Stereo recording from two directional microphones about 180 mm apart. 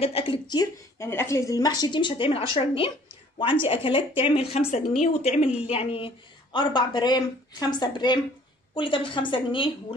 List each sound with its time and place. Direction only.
0.0 s a woman's voice: 35° left (ahead or behind)